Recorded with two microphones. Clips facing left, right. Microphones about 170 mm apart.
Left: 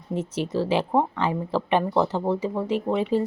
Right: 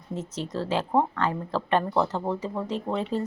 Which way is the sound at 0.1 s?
10° left (ahead or behind).